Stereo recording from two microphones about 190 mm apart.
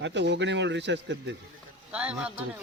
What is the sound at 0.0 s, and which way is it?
A man's voice, 70° right (ahead or behind).